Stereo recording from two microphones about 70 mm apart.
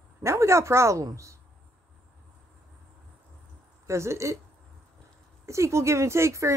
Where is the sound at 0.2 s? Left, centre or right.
Right.